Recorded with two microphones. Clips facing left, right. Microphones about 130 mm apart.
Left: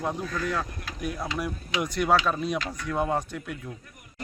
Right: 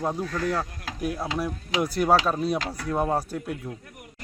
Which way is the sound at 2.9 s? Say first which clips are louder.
Right 2 dB; 20° right (ahead or behind).